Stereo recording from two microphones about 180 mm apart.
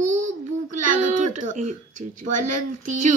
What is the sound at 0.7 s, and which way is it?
A child's voice, 45° right (ahead or behind).